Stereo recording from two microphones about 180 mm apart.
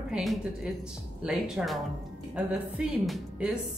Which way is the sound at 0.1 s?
Centre (ahead or behind).